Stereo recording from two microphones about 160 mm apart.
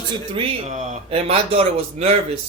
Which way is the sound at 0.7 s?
45° right (ahead or behind).